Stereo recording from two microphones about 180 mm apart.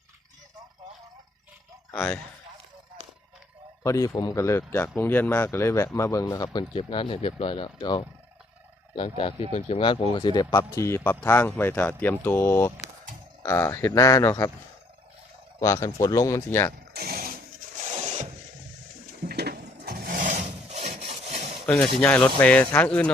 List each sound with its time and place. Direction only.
1.9 s a man's voice: 10° left (ahead or behind)
3.8 s a man's voice: 20° left (ahead or behind)
15.6 s speech: 15° left (ahead or behind)
16.9 s a sound: 60° right (ahead or behind)
17.9 s a sound: 40° right (ahead or behind)
19.2 s wood: 60° right (ahead or behind); by 21.5 s 35° right (ahead or behind)
22.0 s speech: 10° left (ahead or behind)